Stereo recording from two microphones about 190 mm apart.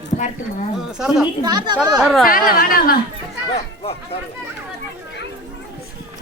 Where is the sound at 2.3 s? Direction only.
50° left (ahead or behind).